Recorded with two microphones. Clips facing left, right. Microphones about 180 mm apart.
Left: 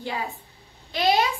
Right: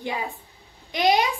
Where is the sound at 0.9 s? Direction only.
15° right (ahead or behind).